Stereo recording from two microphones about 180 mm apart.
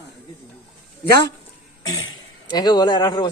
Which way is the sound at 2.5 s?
25° left (ahead or behind).